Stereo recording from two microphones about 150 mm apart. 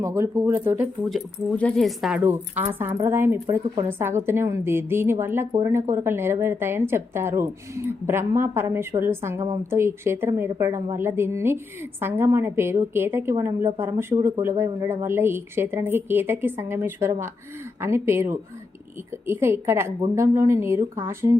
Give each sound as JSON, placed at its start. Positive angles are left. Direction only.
{"t": 0.0, "sound": "speech", "side_deg": -20}
{"t": 1.1, "sound": "speech", "side_deg": 5}